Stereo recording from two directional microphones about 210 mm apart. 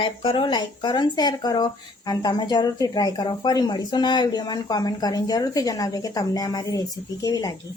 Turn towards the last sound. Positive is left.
turn(degrees=15)  # may be behind; listen again after turning